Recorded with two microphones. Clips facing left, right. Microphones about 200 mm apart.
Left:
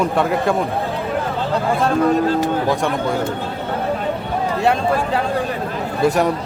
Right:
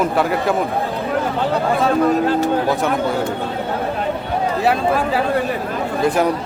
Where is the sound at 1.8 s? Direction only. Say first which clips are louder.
Even; centre (ahead or behind).